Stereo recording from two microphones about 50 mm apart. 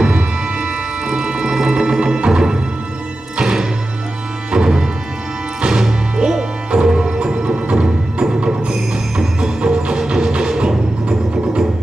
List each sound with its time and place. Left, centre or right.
0.0 s music: centre